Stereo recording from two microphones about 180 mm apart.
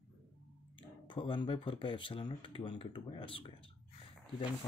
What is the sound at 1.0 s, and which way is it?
Speech, 25° left (ahead or behind).